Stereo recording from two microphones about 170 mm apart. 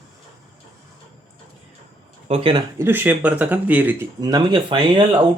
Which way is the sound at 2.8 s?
10° right (ahead or behind).